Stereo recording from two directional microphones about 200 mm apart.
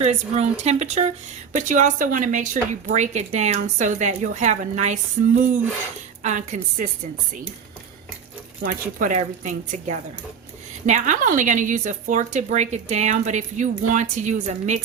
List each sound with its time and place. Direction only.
0.0 s speech: 35° right (ahead or behind)
6.2 s speech: 40° right (ahead or behind)
8.6 s speech: 40° right (ahead or behind)